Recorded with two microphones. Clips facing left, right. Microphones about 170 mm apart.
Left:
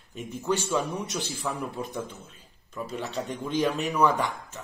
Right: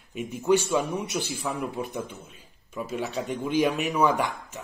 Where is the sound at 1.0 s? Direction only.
15° right (ahead or behind).